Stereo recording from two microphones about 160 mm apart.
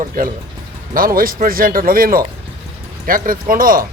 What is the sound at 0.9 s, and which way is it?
Speech, 65° right (ahead or behind).